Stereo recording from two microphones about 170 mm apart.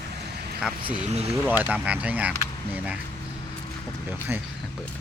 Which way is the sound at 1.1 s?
40° right (ahead or behind).